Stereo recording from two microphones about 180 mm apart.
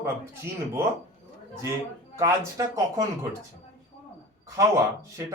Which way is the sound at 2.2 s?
20° right (ahead or behind).